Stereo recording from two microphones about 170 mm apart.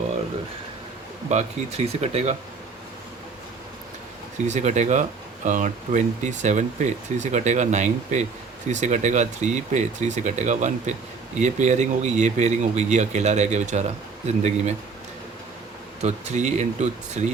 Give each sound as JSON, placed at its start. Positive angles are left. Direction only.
{"t": 1.3, "sound": "speech", "side_deg": -40}
{"t": 4.4, "sound": "speech", "side_deg": -45}
{"t": 16.0, "sound": "speech", "side_deg": -40}